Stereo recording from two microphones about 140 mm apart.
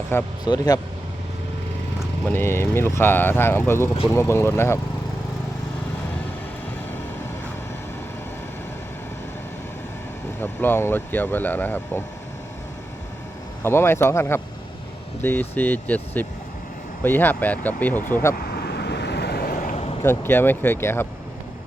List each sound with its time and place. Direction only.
0.1 s speech: 15° left (ahead or behind)
0.4 s speech: 30° left (ahead or behind)
2.2 s speech: 15° left (ahead or behind)
10.4 s speech: 15° left (ahead or behind)
13.6 s speech: 15° left (ahead or behind)
19.4 s vehicle: 85° left
20.0 s speech: 15° left (ahead or behind)